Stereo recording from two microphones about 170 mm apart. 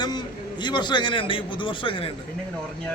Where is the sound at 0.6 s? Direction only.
25° left (ahead or behind).